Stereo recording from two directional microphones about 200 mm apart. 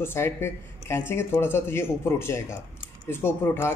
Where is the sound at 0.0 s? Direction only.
10° left (ahead or behind).